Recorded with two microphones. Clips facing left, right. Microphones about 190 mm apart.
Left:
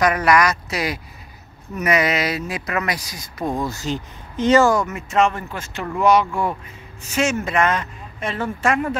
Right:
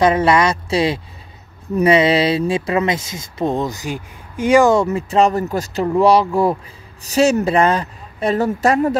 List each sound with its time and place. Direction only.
0.0 s speech: 25° right (ahead or behind)
4.7 s speech: 30° right (ahead or behind)